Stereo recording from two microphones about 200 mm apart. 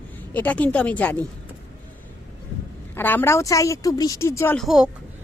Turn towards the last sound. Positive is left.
turn(degrees=0)  # may be behind; listen again after turning